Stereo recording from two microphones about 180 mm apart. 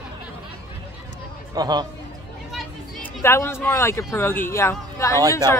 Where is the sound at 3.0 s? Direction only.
15° left (ahead or behind).